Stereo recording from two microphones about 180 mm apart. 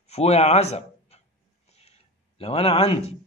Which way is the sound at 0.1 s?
35° left (ahead or behind).